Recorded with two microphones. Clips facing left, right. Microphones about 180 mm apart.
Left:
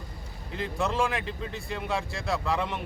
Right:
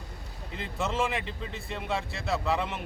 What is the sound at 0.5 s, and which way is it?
Speech, centre (ahead or behind).